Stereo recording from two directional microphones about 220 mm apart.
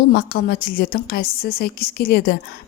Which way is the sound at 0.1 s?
45° left (ahead or behind).